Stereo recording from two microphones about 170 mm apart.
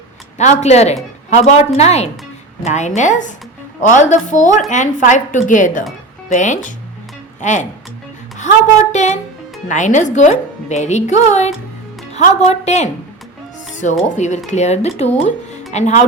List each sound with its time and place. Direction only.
0.3 s a woman's voice: 40° left (ahead or behind)
8.9 s a woman's voice: 45° left (ahead or behind)